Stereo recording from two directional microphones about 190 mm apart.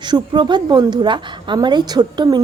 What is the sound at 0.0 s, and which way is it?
A woman's voice, 25° right (ahead or behind).